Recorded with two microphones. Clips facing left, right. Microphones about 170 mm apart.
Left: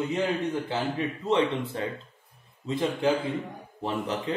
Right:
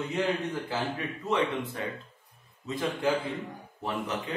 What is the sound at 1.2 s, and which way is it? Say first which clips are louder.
Speech: left 3 dB; 30° left (ahead or behind).